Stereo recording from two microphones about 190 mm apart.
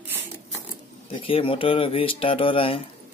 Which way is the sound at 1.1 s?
30° left (ahead or behind).